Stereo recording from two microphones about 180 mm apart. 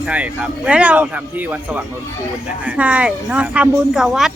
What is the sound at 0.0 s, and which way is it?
Speech, 5° right (ahead or behind).